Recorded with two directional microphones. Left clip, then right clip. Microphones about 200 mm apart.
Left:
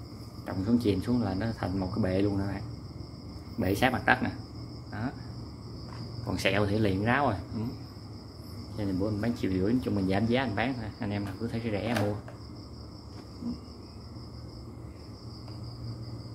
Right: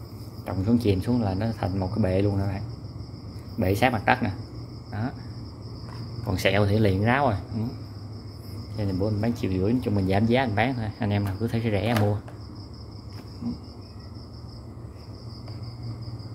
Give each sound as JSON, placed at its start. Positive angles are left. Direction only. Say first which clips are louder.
{"t": 0.5, "sound": "speech", "louder": "right 4 dB", "side_deg": -15}
{"t": 6.2, "sound": "speech", "louder": "right 5 dB", "side_deg": -20}
{"t": 8.7, "sound": "speech", "louder": "right 3 dB", "side_deg": -15}